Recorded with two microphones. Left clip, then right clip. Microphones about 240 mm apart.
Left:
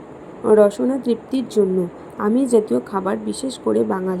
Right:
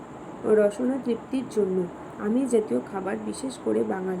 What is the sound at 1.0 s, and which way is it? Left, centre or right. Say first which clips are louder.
Speech: left 7 dB; left.